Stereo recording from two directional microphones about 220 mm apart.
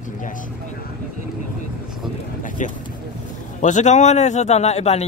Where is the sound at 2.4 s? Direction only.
35° left (ahead or behind).